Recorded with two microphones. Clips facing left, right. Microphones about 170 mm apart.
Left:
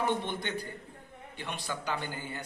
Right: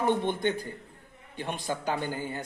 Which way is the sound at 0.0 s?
50° right (ahead or behind).